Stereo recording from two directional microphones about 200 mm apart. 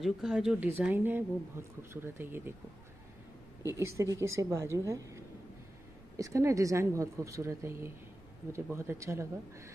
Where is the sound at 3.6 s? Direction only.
15° right (ahead or behind).